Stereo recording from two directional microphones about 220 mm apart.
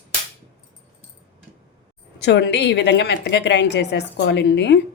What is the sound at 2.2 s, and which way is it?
A woman's voice, 50° left (ahead or behind).